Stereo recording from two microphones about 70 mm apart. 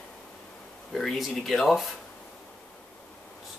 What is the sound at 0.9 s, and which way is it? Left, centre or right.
Speech, centre.